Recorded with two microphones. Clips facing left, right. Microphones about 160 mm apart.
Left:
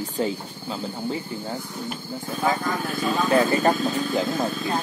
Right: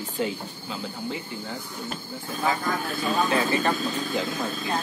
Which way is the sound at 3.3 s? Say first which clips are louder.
Left 5 dB; 40° left (ahead or behind).